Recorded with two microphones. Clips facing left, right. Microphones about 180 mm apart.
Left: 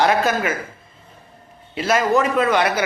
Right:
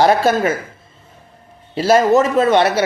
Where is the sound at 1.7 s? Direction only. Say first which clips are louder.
Right 6 dB; 30° right (ahead or behind).